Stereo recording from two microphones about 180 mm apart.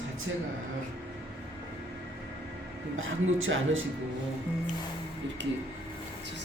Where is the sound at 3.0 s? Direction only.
90° right.